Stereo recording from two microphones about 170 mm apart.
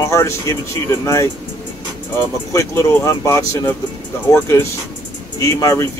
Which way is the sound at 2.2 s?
15° left (ahead or behind).